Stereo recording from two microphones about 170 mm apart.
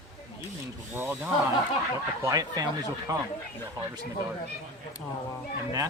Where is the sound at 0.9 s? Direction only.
15° right (ahead or behind).